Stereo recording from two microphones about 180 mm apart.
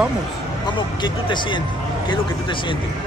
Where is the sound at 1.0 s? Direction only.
25° left (ahead or behind).